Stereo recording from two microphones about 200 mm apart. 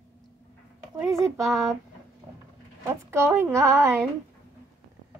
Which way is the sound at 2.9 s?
15° right (ahead or behind).